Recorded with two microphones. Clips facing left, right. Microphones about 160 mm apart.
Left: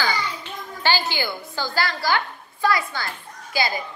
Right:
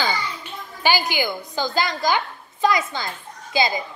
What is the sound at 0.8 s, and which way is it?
A child's voice, 15° right (ahead or behind).